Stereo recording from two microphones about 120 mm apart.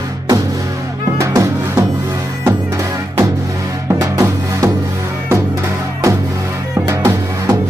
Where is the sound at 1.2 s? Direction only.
25° right (ahead or behind).